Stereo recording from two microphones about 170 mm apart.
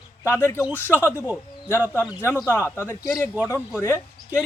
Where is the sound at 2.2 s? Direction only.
15° left (ahead or behind).